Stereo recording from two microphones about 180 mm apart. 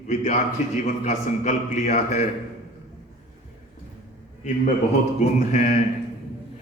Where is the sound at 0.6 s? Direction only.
40° left (ahead or behind).